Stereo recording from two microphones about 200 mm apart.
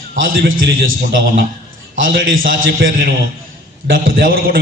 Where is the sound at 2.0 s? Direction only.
45° right (ahead or behind).